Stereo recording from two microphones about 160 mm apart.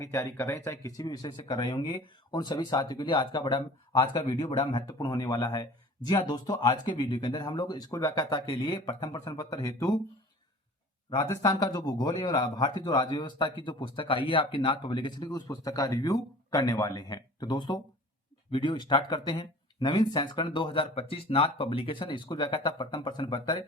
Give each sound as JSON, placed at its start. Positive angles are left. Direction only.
{"t": 0.0, "sound": "speech", "side_deg": 20}
{"t": 11.1, "sound": "speech", "side_deg": 25}